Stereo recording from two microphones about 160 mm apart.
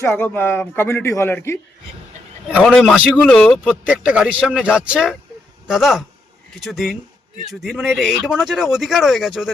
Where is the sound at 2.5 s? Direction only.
5° left (ahead or behind).